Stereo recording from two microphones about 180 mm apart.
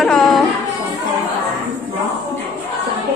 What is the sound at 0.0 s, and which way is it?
Music, centre (ahead or behind).